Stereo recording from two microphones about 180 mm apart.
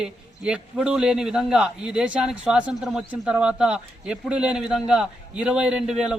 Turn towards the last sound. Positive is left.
turn(degrees=-5)  # may be behind; listen again after turning